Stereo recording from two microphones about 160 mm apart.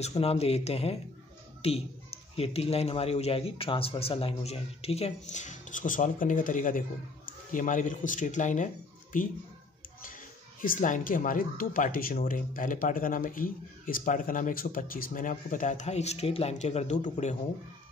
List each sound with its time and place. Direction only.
0.0 s a man's voice: 40° left (ahead or behind)
10.6 s speech: 60° left (ahead or behind)